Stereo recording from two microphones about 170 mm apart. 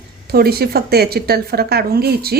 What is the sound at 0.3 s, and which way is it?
A woman's voice, 65° right (ahead or behind).